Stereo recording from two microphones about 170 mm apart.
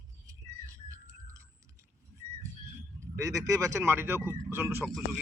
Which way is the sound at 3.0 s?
20° right (ahead or behind).